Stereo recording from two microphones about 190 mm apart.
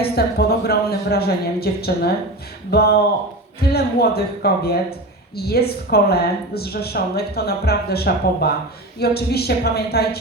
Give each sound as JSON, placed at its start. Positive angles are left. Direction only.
{"t": 0.0, "sound": "speech", "side_deg": 55}